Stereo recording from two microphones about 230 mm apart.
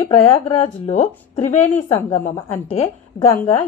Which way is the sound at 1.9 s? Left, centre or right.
Centre.